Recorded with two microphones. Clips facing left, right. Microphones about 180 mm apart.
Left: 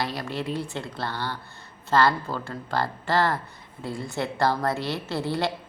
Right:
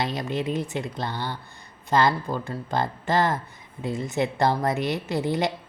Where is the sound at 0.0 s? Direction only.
20° right (ahead or behind).